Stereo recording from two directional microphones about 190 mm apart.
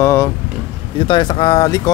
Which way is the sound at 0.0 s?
15° left (ahead or behind).